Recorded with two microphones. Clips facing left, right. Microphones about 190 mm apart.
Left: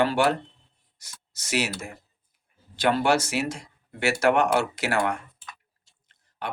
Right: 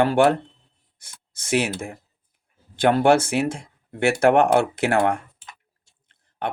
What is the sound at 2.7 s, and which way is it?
Speech, 50° right (ahead or behind).